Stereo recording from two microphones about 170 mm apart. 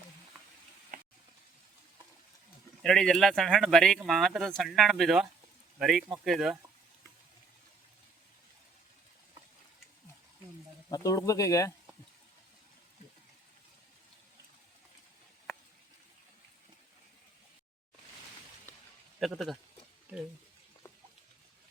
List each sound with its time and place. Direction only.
2.8 s speech: centre (ahead or behind)
10.8 s speech: 20° left (ahead or behind)
19.2 s speech: centre (ahead or behind)
20.1 s speech: 10° right (ahead or behind)